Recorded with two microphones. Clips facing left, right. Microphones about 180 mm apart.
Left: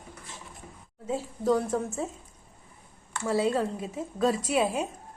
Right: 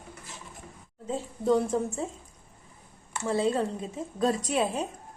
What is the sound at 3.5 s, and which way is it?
A woman's voice, 5° left (ahead or behind).